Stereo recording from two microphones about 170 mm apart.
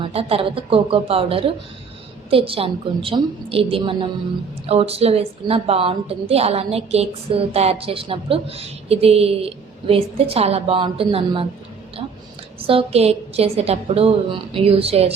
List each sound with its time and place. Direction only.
0.0 s a woman's voice: 35° right (ahead or behind)
12.5 s a woman's voice: 35° right (ahead or behind)